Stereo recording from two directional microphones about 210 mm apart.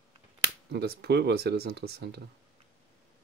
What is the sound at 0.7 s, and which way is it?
Speech, 50° right (ahead or behind).